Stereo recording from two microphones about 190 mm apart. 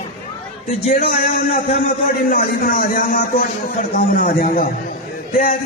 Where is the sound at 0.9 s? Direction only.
40° left (ahead or behind).